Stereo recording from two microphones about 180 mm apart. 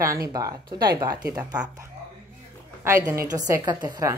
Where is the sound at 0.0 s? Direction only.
20° right (ahead or behind).